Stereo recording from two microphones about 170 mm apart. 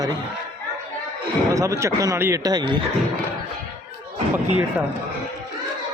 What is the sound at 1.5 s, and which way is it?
Speech, 20° right (ahead or behind).